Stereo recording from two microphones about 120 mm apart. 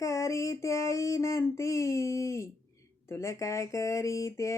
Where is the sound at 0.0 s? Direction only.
25° left (ahead or behind).